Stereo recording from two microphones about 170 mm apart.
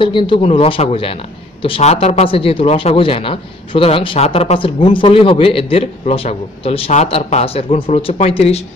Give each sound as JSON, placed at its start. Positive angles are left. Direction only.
{"t": 0.0, "sound": "speech", "side_deg": 30}